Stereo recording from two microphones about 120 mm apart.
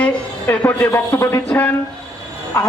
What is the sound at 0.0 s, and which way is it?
A man's voice, 15° left (ahead or behind).